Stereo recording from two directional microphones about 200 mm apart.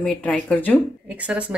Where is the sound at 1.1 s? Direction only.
5° right (ahead or behind).